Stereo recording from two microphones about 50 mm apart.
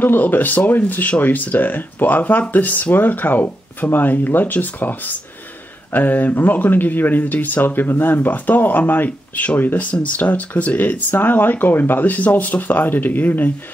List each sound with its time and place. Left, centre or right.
0.0 s speech: left